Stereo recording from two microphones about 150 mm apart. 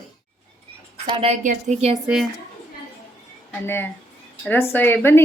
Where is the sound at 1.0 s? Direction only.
35° right (ahead or behind).